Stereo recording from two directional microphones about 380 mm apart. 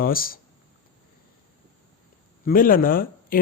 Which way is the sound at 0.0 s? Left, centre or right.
Left.